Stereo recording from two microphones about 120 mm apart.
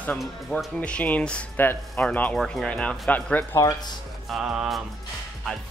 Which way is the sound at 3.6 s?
30° left (ahead or behind).